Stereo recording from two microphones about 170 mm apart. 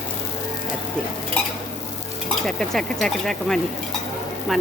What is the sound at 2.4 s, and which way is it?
Speech, 5° left (ahead or behind).